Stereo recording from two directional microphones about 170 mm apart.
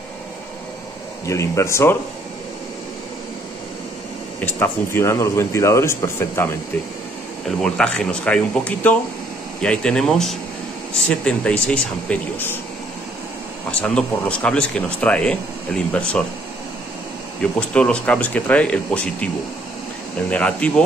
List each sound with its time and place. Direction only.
1.2 s speech: 15° left (ahead or behind)
4.5 s speech: 15° left (ahead or behind)
7.4 s speech: 5° left (ahead or behind)
13.7 s speech: 5° left (ahead or behind)
17.4 s speech: 5° left (ahead or behind)
20.2 s speech: 5° left (ahead or behind)